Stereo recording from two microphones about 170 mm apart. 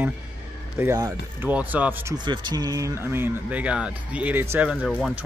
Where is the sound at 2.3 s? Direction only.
25° right (ahead or behind).